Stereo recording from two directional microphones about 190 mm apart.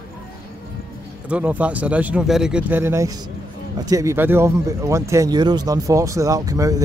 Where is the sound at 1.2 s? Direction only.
5° right (ahead or behind).